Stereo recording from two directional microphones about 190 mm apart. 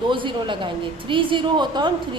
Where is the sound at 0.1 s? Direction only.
25° right (ahead or behind).